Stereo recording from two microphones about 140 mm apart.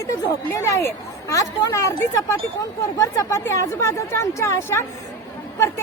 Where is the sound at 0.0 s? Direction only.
20° left (ahead or behind).